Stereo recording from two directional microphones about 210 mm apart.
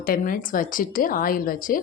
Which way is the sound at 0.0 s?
40° left (ahead or behind).